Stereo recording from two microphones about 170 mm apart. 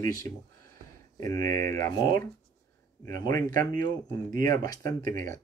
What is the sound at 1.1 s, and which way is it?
Speech, 20° left (ahead or behind).